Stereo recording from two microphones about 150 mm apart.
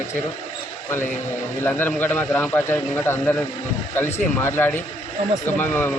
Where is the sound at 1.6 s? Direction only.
10° left (ahead or behind).